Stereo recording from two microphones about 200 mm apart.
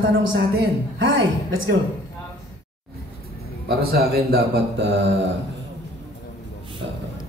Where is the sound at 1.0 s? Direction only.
75° right (ahead or behind).